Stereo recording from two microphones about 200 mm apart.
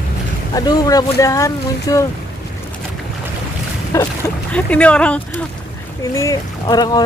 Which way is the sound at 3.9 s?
15° left (ahead or behind).